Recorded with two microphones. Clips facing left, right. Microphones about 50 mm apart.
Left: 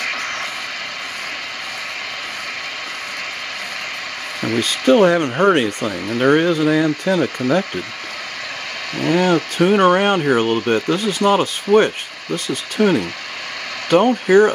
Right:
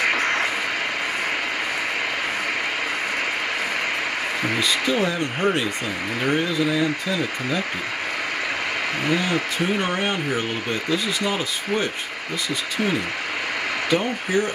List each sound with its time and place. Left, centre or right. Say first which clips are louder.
0.0 s vehicle: right 3 dB; centre
4.6 s speech: left 10 dB; left
9.1 s speech: left 9 dB; left
12.8 s speech: left 9 dB; left
13.8 s speech: left 11 dB; left